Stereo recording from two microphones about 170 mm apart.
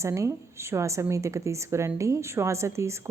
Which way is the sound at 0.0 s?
15° right (ahead or behind).